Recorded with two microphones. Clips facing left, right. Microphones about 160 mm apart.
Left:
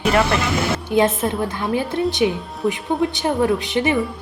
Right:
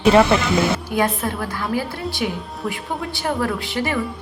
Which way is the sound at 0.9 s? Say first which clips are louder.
Left 4 dB; 25° left (ahead or behind).